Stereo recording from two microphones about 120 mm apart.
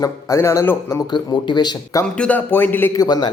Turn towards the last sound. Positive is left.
turn(degrees=35)  # may be behind; listen again after turning